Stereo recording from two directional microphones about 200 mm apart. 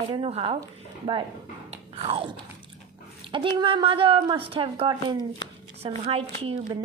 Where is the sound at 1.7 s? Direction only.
30° right (ahead or behind).